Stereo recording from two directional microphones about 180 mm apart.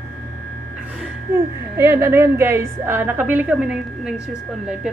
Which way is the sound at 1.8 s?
15° right (ahead or behind).